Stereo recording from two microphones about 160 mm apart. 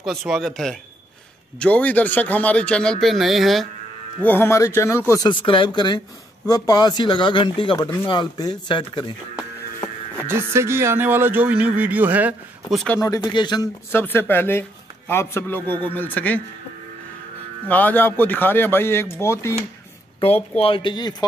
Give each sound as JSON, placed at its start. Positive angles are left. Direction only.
{"t": 0.0, "sound": "a man's voice", "side_deg": 0}
{"t": 4.2, "sound": "a man's voice", "side_deg": 15}
{"t": 5.1, "sound": "speech", "side_deg": 30}
{"t": 10.2, "sound": "speech", "side_deg": -15}
{"t": 12.7, "sound": "a man's voice", "side_deg": 10}
{"t": 13.0, "sound": "speech", "side_deg": 25}
{"t": 13.9, "sound": "a man's voice", "side_deg": 15}
{"t": 17.6, "sound": "a man's voice", "side_deg": 10}
{"t": 20.5, "sound": "speech", "side_deg": 35}